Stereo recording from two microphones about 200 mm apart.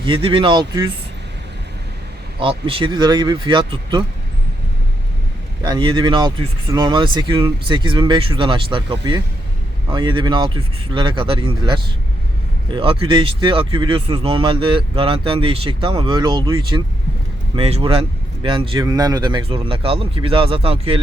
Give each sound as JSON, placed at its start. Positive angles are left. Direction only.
{"t": 0.0, "sound": "speech", "side_deg": -25}
{"t": 2.4, "sound": "speech", "side_deg": -25}
{"t": 5.6, "sound": "speech", "side_deg": -20}